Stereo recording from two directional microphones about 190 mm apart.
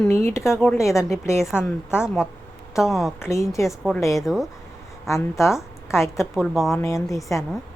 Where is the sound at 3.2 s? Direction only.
15° left (ahead or behind).